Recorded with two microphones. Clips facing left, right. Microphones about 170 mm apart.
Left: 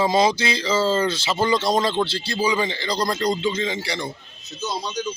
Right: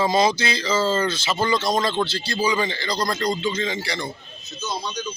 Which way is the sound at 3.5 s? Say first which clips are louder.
Left 1 dB; 20° left (ahead or behind).